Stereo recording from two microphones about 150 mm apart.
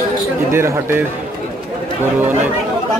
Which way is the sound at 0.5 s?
15° right (ahead or behind).